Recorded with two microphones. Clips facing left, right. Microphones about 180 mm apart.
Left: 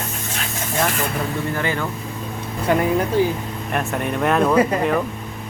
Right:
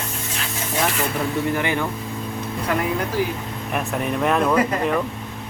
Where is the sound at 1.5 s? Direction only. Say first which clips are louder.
Right 1 dB; 15° right (ahead or behind).